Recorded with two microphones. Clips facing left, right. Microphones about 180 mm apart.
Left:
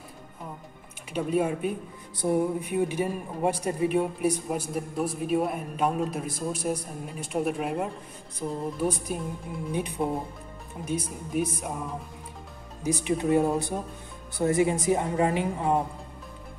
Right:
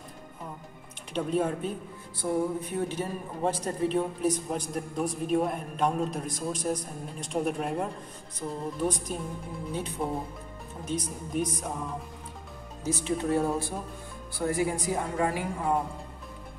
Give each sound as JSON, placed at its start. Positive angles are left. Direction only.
{"t": 1.1, "sound": "a woman's voice", "side_deg": 10}